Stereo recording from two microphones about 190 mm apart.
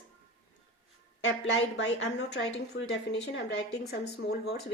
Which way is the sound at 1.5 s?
75° left (ahead or behind).